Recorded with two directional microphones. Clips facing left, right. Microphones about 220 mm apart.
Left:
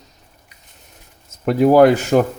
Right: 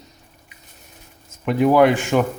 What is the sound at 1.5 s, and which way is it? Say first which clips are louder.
Speech: left 4 dB; 40° left (ahead or behind).